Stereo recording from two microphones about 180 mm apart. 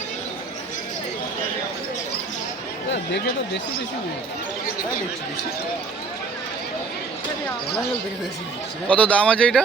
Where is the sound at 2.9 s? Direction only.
70° left (ahead or behind).